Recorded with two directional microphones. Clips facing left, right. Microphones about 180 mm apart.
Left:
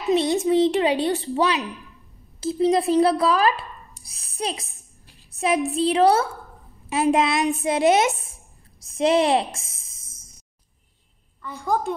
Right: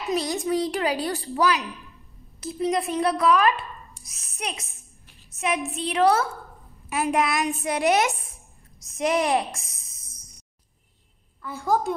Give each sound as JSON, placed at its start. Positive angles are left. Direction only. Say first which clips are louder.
{"t": 0.3, "sound": "a woman's voice", "louder": "left 6 dB", "side_deg": 25}
{"t": 9.4, "sound": "a sound", "louder": "left 2 dB", "side_deg": 25}
{"t": 11.4, "sound": "a woman's voice", "louder": "right 1 dB", "side_deg": -5}